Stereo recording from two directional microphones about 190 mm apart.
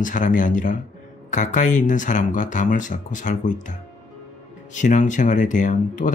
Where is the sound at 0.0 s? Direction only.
45° left (ahead or behind).